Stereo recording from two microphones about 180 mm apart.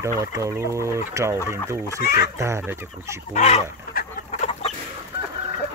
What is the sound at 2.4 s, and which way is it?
Chicken, 15° right (ahead or behind).